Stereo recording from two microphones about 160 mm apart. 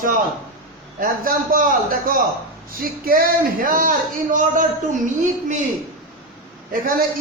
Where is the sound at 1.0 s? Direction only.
65° right (ahead or behind).